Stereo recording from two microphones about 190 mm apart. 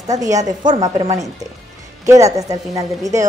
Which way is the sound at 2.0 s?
15° right (ahead or behind).